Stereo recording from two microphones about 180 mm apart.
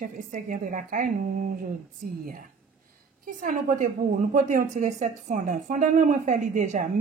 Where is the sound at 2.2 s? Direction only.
50° right (ahead or behind).